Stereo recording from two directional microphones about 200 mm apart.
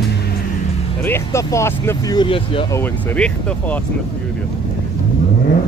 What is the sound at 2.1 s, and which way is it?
Speech, 25° left (ahead or behind).